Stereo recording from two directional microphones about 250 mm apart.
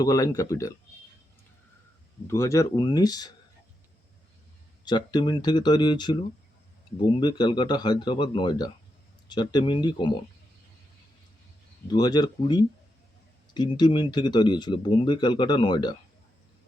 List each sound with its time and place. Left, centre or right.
0.0 s speech: centre
2.2 s speech: centre
4.9 s speech: centre
11.9 s speech: centre